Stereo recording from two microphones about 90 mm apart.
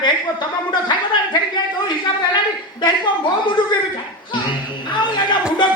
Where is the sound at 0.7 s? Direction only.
55° left (ahead or behind).